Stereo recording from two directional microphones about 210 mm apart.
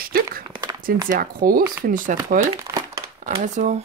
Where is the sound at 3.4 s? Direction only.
35° right (ahead or behind).